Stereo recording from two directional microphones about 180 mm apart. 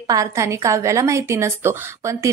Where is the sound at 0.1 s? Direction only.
20° right (ahead or behind).